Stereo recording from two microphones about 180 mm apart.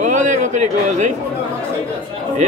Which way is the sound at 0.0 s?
45° right (ahead or behind).